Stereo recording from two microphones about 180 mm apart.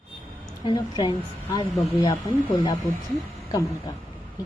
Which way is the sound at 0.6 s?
25° left (ahead or behind).